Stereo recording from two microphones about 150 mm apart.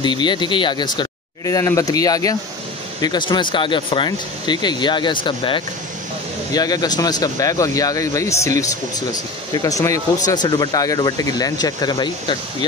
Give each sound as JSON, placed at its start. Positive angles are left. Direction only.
{"t": 0.0, "sound": "speech", "side_deg": 30}